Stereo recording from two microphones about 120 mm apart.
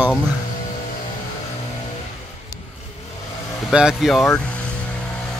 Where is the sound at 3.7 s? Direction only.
5° right (ahead or behind).